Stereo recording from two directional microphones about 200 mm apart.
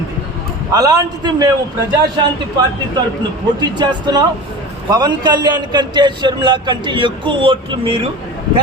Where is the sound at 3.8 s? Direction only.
20° right (ahead or behind).